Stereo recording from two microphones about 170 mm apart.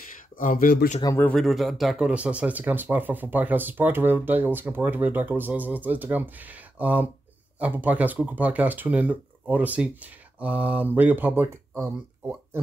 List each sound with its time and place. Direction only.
0.4 s speech: 50° left (ahead or behind)
1.0 s speech: 15° left (ahead or behind)
1.3 s speech: centre (ahead or behind); by 12.4 s 15° right (ahead or behind)